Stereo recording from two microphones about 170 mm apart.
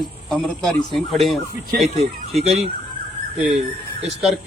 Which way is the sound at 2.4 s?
40° right (ahead or behind).